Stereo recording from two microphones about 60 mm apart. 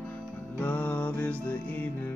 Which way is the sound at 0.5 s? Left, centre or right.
Left.